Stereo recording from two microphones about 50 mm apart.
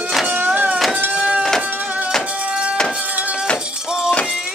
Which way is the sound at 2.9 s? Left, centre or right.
Right.